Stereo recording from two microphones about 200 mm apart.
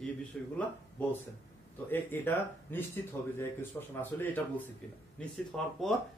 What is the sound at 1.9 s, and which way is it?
A man's voice, 10° left (ahead or behind).